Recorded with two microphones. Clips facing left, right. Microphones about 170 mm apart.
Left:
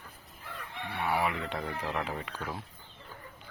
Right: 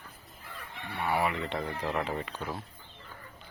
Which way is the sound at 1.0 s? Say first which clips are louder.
Right 1 dB; 10° left (ahead or behind).